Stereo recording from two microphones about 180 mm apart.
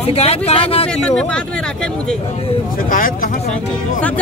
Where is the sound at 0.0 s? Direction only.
35° left (ahead or behind).